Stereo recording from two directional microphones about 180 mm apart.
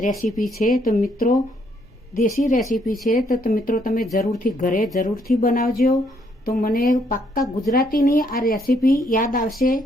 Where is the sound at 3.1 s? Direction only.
50° left (ahead or behind).